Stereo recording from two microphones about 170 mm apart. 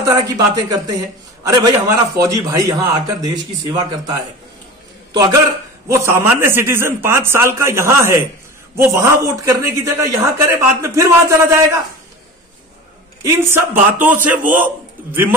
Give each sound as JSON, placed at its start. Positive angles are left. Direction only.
{"t": 0.0, "sound": "a man's voice", "side_deg": -20}
{"t": 5.1, "sound": "a man's voice", "side_deg": -20}
{"t": 13.2, "sound": "a man's voice", "side_deg": -15}